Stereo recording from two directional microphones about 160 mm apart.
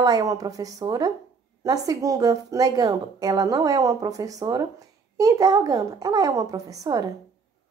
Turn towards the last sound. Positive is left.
turn(degrees=-25)  # may be behind; listen again after turning